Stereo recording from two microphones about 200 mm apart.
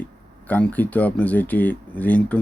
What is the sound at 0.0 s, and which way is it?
A man's voice, 10° left (ahead or behind).